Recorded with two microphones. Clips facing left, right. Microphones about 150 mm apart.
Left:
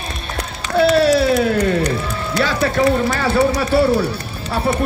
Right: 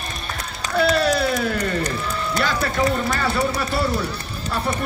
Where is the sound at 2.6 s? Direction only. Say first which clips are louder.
Left 6 dB; 60° left (ahead or behind).